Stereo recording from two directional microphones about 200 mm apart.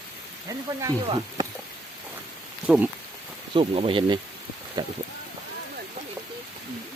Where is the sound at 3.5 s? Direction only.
30° right (ahead or behind).